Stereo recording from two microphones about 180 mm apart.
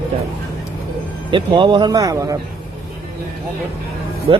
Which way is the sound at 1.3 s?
25° right (ahead or behind).